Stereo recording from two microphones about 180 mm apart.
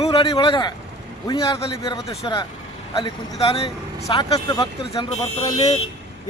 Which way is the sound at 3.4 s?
35° left (ahead or behind).